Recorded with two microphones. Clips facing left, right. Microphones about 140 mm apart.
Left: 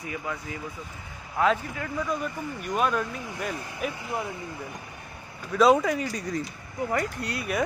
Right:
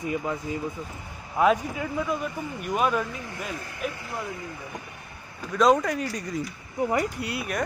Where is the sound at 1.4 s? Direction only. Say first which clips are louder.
Right 3 dB; 15° right (ahead or behind).